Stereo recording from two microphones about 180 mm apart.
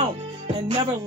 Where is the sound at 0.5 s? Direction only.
30° right (ahead or behind).